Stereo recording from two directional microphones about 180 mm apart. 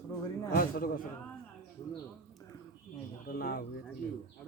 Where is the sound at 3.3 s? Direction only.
55° left (ahead or behind).